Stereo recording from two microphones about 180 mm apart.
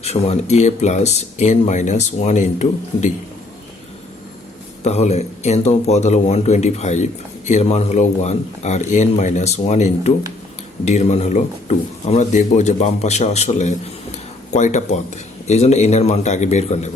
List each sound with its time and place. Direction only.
0.0 s speech: 35° left (ahead or behind)
4.8 s speech: 35° left (ahead or behind)